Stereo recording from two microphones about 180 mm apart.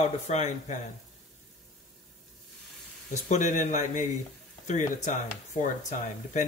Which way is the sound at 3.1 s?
40° left (ahead or behind).